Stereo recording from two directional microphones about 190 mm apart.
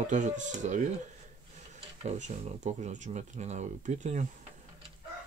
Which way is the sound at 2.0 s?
40° right (ahead or behind).